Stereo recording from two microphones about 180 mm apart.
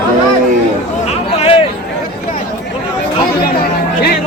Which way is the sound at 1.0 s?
35° left (ahead or behind).